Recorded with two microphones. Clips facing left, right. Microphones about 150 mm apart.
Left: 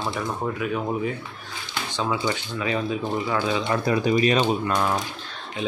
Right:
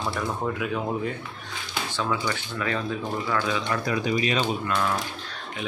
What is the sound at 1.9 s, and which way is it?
Speech, 20° left (ahead or behind).